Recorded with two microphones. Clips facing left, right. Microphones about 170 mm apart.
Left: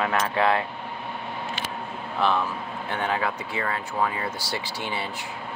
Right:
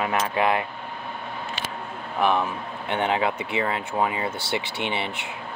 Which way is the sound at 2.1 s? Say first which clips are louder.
Right 2 dB; 15° right (ahead or behind).